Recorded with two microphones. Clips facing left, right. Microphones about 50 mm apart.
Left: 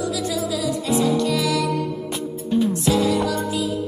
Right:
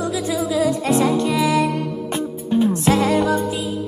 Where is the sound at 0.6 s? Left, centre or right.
Right.